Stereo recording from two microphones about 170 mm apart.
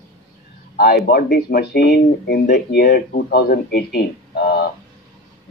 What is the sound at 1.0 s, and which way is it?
Speech, 60° left (ahead or behind).